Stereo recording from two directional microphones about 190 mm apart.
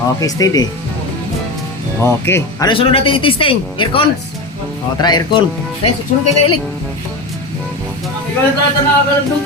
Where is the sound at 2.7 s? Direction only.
30° left (ahead or behind).